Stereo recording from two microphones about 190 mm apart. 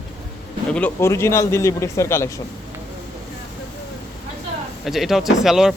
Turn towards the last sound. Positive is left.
turn(degrees=0)  # may be behind; listen again after turning